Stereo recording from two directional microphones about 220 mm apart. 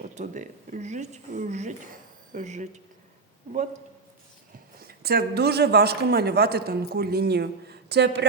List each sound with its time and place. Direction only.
0.1 s speech: 35° right (ahead or behind)
4.9 s a man's voice: 45° right (ahead or behind)